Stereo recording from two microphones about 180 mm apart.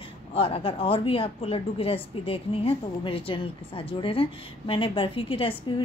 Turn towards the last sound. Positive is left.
turn(degrees=30)  # may be behind; listen again after turning